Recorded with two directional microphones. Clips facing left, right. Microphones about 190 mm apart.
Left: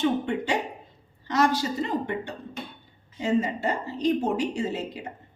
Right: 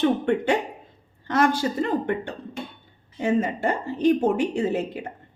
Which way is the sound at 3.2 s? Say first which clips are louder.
Right 2 dB; 55° right (ahead or behind).